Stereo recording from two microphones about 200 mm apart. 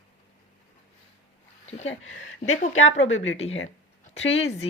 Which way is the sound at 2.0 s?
90° left.